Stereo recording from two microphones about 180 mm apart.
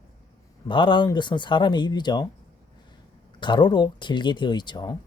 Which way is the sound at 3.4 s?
25° left (ahead or behind).